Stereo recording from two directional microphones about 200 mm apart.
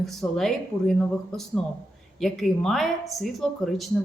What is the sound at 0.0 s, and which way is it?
Speech, centre (ahead or behind).